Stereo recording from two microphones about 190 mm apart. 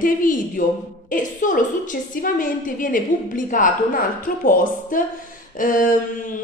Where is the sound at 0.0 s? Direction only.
45° left (ahead or behind).